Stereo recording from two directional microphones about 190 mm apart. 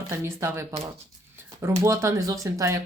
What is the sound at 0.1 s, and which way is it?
Speech, 15° right (ahead or behind).